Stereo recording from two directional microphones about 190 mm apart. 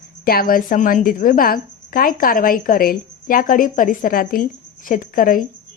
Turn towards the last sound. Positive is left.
turn(degrees=45)  # may be behind; listen again after turning